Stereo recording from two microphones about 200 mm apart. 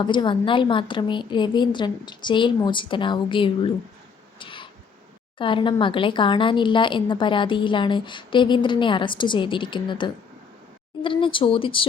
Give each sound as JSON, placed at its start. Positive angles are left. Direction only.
{"t": 0.0, "sound": "speech", "side_deg": 25}
{"t": 4.4, "sound": "cat", "side_deg": 25}
{"t": 5.4, "sound": "speech", "side_deg": 25}